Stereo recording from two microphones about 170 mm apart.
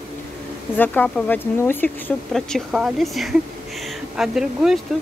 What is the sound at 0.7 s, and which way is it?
Speech, 10° left (ahead or behind).